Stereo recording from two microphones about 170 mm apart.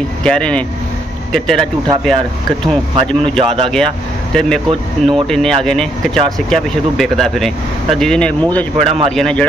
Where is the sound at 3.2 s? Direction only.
35° right (ahead or behind).